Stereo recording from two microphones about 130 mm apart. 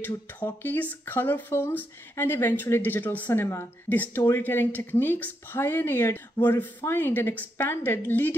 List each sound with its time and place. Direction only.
0.0 s speech: 15° left (ahead or behind)